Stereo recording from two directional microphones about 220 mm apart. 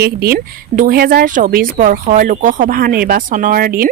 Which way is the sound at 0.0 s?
45° right (ahead or behind).